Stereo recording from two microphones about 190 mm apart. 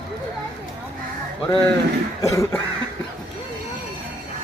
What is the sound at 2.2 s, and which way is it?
Cough, 15° left (ahead or behind).